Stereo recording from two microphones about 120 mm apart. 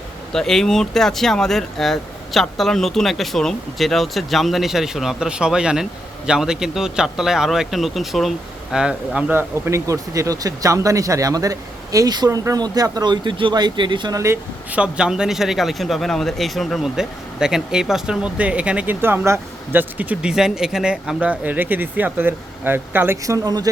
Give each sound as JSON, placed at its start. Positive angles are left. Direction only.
{"t": 0.3, "sound": "speech", "side_deg": 5}
{"t": 14.7, "sound": "speech", "side_deg": -10}
{"t": 23.2, "sound": "speech", "side_deg": -30}